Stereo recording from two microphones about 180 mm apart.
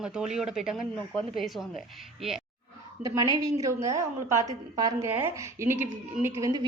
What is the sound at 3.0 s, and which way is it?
A woman's voice, 20° right (ahead or behind).